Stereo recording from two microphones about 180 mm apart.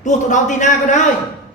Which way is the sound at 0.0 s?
40° left (ahead or behind).